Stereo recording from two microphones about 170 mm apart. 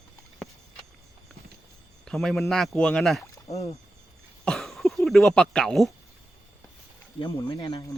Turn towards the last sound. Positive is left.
turn(degrees=25)  # may be behind; listen again after turning